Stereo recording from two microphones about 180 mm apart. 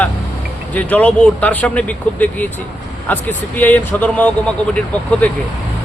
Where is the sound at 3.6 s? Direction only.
10° left (ahead or behind).